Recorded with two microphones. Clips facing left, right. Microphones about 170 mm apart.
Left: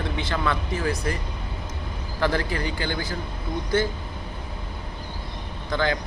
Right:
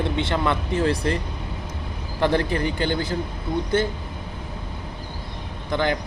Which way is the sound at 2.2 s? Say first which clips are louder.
Right 4 dB; 20° right (ahead or behind).